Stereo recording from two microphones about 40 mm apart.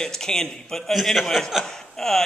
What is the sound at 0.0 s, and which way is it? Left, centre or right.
Speech, centre.